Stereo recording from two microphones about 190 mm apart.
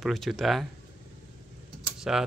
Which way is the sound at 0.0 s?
Centre (ahead or behind).